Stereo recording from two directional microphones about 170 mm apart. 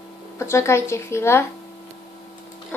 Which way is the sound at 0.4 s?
15° left (ahead or behind).